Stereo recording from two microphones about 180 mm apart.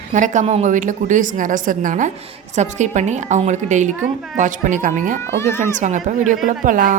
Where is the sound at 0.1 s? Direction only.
45° right (ahead or behind).